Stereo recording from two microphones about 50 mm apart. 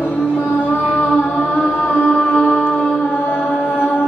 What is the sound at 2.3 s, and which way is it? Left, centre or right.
Music, left.